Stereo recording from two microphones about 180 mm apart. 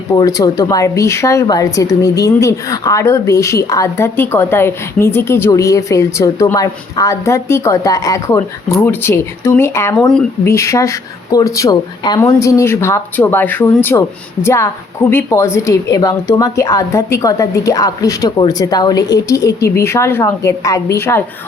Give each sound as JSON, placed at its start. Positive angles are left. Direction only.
{"t": 0.2, "sound": "a woman's voice", "side_deg": 20}